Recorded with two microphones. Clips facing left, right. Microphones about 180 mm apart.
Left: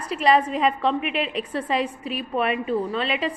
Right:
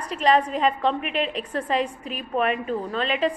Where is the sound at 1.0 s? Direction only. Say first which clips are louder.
Left 1 dB; 35° right (ahead or behind).